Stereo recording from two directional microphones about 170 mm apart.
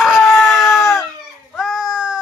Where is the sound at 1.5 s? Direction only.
Centre (ahead or behind).